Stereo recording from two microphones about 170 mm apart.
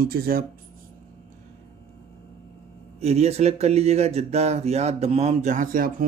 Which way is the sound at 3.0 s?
40° right (ahead or behind).